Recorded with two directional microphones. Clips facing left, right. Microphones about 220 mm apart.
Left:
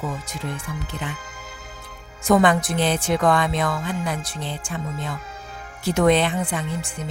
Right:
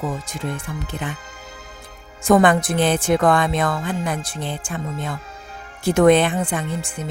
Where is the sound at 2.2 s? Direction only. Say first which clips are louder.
Right 2 dB; 50° right (ahead or behind).